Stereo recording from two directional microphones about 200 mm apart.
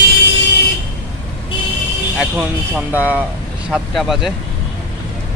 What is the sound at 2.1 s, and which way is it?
Speech, 5° right (ahead or behind).